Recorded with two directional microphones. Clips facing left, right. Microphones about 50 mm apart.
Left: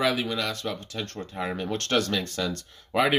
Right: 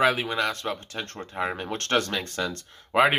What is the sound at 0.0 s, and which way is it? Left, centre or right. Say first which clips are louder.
Speech: right 3 dB; right.